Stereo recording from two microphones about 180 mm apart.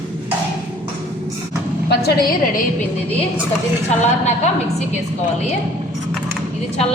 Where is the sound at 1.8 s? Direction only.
60° left (ahead or behind).